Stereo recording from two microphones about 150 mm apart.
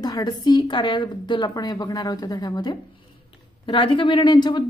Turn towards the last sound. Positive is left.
turn(degrees=30)  # may be behind; listen again after turning